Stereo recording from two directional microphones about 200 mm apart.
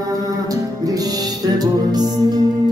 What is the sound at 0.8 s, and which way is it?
Music, 20° right (ahead or behind).